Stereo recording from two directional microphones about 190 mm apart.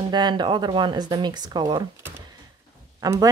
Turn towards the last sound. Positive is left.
turn(degrees=-20)  # may be behind; listen again after turning